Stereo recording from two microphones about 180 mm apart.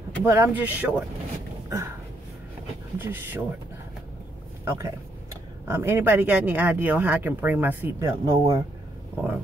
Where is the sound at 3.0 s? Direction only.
10° right (ahead or behind).